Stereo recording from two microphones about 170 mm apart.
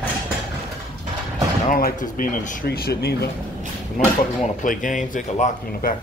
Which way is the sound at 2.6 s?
65° left (ahead or behind).